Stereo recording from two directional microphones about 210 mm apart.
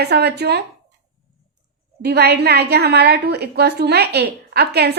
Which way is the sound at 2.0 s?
50° right (ahead or behind).